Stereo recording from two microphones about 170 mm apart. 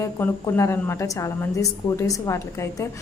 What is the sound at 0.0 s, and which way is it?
A woman's voice, 15° left (ahead or behind).